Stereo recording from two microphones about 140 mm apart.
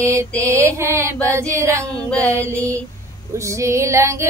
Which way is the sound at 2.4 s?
10° left (ahead or behind).